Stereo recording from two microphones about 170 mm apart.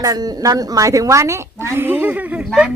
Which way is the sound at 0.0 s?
20° right (ahead or behind).